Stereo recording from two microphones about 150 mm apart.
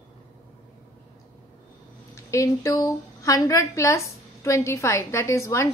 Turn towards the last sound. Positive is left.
turn(degrees=20)  # may be behind; listen again after turning